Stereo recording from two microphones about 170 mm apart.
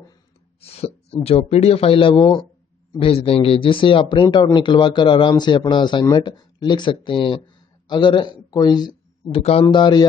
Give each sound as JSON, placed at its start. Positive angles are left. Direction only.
{"t": 0.6, "sound": "speech", "side_deg": 35}